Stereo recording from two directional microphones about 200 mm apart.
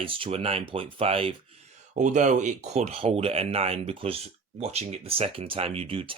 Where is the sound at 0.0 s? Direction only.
25° right (ahead or behind).